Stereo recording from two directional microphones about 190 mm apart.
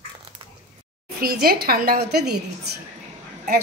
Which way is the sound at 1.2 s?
50° right (ahead or behind).